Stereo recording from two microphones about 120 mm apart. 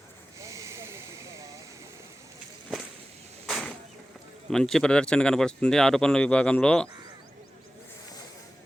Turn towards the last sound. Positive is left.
turn(degrees=10)  # may be behind; listen again after turning